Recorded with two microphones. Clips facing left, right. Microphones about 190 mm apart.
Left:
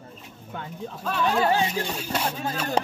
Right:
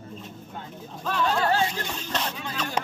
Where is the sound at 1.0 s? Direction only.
10° left (ahead or behind).